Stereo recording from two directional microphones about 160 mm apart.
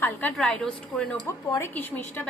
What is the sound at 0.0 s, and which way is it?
A woman's voice, 10° left (ahead or behind).